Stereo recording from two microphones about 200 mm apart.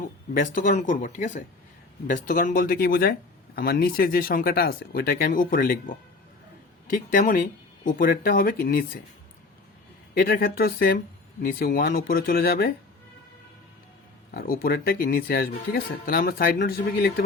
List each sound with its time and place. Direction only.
0.3 s speech: 40° left (ahead or behind)
10.2 s speech: 45° left (ahead or behind)
14.3 s speech: 45° left (ahead or behind)